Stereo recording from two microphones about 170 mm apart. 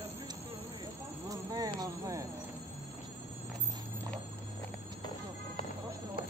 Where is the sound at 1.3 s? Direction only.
20° right (ahead or behind).